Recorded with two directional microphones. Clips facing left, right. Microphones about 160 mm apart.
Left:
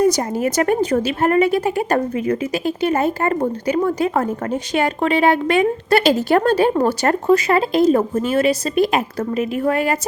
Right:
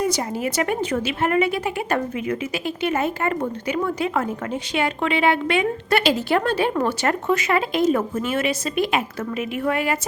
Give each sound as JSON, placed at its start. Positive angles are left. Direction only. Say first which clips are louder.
{"t": 0.0, "sound": "a woman's voice", "louder": "left 6 dB", "side_deg": 45}